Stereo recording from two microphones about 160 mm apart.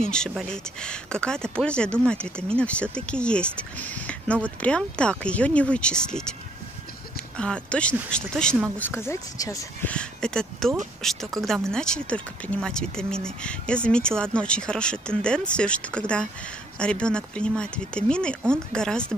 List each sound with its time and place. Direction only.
0.0 s speech: 5° left (ahead or behind)
7.3 s speech: 5° left (ahead or behind); by 9.7 s 20° left (ahead or behind)
9.8 s speech: 5° left (ahead or behind)